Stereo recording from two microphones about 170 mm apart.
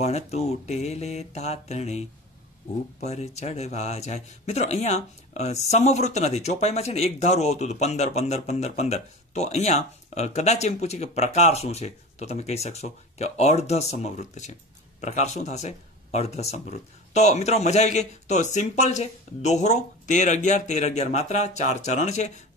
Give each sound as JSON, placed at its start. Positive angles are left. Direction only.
{"t": 0.0, "sound": "speech", "side_deg": 40}